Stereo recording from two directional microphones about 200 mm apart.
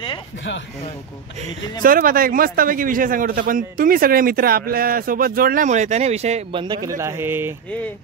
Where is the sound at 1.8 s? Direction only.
45° right (ahead or behind); by 7.6 s 10° right (ahead or behind).